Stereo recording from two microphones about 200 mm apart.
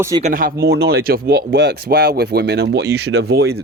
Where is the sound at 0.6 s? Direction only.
50° right (ahead or behind).